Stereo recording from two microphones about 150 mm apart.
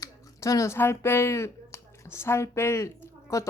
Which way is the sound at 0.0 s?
20° left (ahead or behind).